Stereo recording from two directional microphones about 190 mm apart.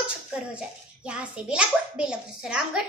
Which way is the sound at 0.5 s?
5° right (ahead or behind).